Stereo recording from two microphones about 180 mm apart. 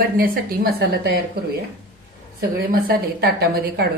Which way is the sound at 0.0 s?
55° right (ahead or behind).